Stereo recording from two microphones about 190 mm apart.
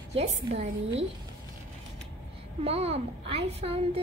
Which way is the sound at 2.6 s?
30° right (ahead or behind).